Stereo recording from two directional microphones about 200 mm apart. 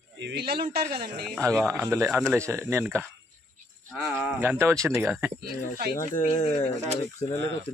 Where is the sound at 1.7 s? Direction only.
15° right (ahead or behind).